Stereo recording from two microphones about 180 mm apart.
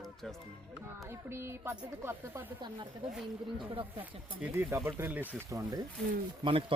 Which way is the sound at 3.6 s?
30° right (ahead or behind).